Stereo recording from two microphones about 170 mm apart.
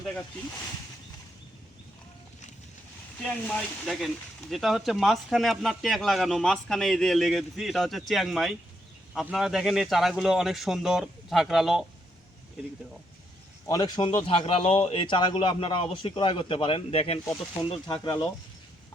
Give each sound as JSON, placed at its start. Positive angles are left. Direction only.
{"t": 3.2, "sound": "speech", "side_deg": 5}
{"t": 13.7, "sound": "speech", "side_deg": 20}